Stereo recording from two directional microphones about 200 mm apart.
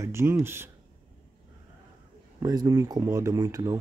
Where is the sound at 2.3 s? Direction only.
15° right (ahead or behind).